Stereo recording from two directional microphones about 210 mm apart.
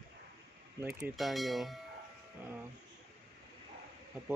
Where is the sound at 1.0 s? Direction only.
Centre (ahead or behind).